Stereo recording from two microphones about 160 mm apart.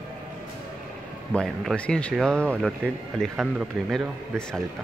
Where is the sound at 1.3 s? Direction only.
Centre (ahead or behind).